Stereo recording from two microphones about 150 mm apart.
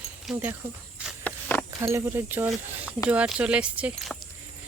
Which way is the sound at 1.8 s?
20° right (ahead or behind).